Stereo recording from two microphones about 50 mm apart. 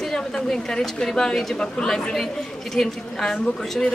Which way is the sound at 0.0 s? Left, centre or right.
Centre.